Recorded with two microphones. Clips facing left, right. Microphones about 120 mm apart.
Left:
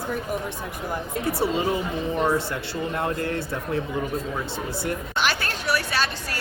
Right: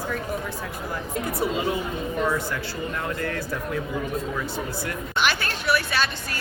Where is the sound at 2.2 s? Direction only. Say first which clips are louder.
Left 1 dB; 25° left (ahead or behind).